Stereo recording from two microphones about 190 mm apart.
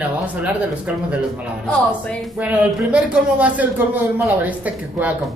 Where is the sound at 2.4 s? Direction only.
5° right (ahead or behind).